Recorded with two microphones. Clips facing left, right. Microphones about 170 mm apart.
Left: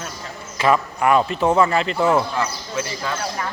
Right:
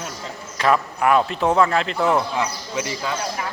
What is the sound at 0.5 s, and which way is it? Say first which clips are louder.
A man's voice: left 1 dB; centre (ahead or behind).